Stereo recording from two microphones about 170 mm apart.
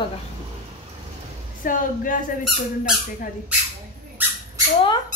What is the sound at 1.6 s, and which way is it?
Speech, 55° left (ahead or behind).